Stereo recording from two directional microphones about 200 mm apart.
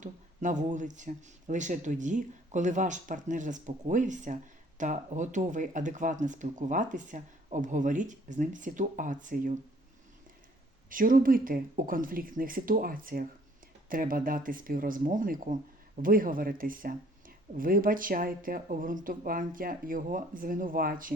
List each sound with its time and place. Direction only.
0.0 s speech: 40° right (ahead or behind)
10.8 s speech: 45° right (ahead or behind)